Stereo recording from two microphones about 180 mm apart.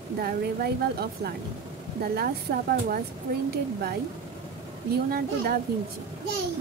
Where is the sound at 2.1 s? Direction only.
55° right (ahead or behind).